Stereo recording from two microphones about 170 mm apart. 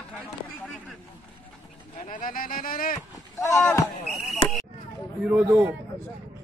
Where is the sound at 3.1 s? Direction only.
15° left (ahead or behind).